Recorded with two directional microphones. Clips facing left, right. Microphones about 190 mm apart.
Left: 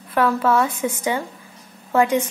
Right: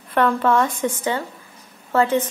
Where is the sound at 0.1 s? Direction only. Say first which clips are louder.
Even; 5° left (ahead or behind).